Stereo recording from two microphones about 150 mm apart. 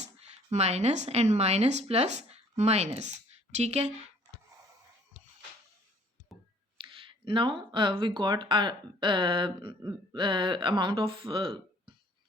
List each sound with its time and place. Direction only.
0.5 s speech: 50° right (ahead or behind)
6.3 s a sound: centre (ahead or behind)
6.7 s speech: 35° right (ahead or behind)